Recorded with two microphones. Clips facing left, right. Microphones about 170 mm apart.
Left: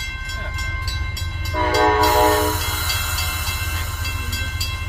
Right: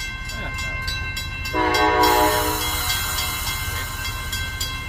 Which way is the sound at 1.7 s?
40° left (ahead or behind).